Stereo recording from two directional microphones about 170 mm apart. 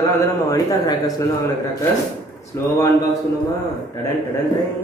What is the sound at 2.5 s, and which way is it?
Speech, 15° left (ahead or behind).